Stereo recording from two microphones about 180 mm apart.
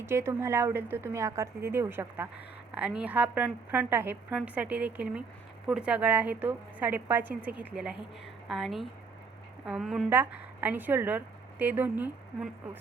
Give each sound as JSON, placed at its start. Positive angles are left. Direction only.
{"t": 0.0, "sound": "a woman's voice", "side_deg": -15}